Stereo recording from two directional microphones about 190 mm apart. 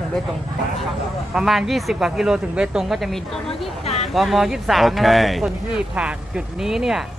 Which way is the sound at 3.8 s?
35° left (ahead or behind).